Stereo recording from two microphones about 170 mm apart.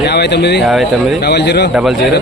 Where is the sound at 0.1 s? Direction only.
75° left (ahead or behind).